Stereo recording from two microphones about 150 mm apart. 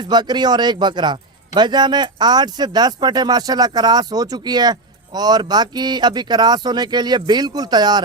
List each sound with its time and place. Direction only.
0.0 s a man's voice: 30° right (ahead or behind)